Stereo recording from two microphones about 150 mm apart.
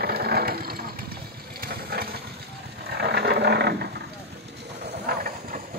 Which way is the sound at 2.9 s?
90° right.